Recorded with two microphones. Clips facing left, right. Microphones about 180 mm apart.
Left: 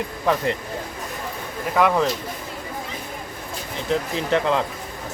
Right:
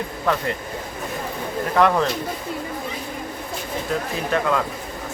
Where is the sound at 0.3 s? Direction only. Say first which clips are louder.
Left 1 dB; 15° left (ahead or behind).